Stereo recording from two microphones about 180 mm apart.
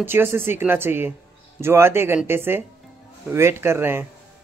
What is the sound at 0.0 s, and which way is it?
Speech, 10° right (ahead or behind).